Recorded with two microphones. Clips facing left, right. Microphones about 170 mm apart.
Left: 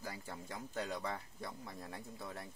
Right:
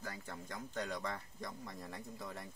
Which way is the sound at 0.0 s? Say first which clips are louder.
Even; 10° left (ahead or behind).